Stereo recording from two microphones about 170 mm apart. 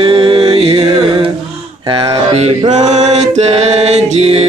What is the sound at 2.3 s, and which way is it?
Mantra, 40° right (ahead or behind).